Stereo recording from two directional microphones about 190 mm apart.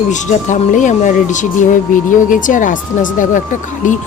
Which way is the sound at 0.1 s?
40° left (ahead or behind).